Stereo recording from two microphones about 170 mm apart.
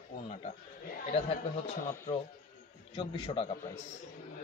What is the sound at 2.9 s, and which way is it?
Speech, 30° left (ahead or behind).